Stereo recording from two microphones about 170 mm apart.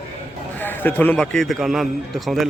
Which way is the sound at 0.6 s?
10° left (ahead or behind).